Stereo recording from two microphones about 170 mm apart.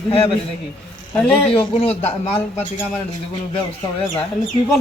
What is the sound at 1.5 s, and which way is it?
Speech, 35° left (ahead or behind).